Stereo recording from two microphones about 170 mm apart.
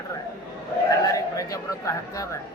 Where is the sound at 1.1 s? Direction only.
20° left (ahead or behind).